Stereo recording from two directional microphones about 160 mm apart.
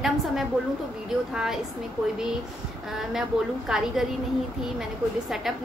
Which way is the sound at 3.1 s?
5° right (ahead or behind).